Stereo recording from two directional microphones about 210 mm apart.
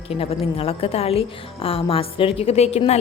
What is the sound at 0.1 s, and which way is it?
A woman's voice, 25° left (ahead or behind).